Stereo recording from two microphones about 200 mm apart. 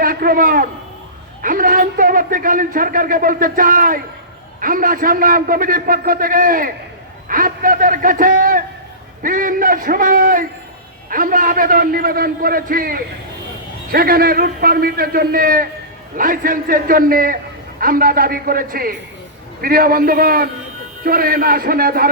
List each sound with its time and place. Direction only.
0.0 s a man's voice: 45° right (ahead or behind)